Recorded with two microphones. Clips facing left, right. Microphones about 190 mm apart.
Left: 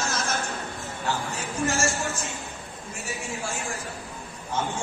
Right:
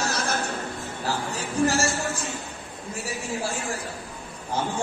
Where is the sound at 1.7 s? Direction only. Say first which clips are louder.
Right 2 dB; 35° right (ahead or behind).